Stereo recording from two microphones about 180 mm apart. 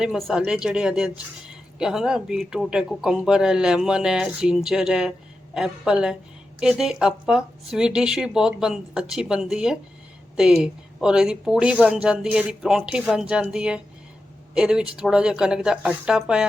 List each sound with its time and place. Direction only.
0.0 s speech: centre (ahead or behind)